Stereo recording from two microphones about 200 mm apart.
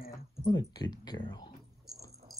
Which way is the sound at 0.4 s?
20° left (ahead or behind).